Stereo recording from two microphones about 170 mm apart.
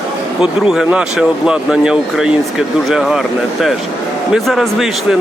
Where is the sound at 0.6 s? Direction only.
5° right (ahead or behind).